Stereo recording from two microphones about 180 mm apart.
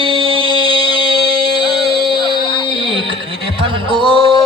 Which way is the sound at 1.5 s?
25° left (ahead or behind).